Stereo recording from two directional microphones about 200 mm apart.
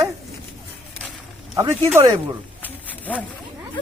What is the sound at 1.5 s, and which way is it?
Speech, 15° right (ahead or behind).